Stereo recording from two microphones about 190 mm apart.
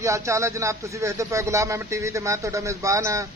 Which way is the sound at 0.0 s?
15° right (ahead or behind).